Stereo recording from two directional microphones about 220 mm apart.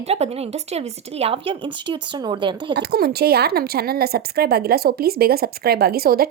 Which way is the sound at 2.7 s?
45° right (ahead or behind).